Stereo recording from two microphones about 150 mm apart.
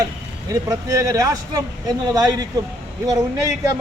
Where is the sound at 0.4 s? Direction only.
20° right (ahead or behind).